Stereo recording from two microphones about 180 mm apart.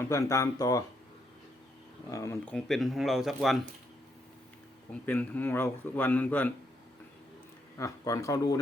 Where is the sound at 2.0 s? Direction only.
15° left (ahead or behind).